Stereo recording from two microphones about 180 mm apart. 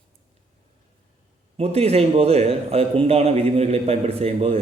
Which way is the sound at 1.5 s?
35° right (ahead or behind).